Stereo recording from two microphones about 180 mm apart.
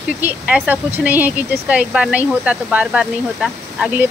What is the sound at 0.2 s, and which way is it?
Speech, 10° right (ahead or behind).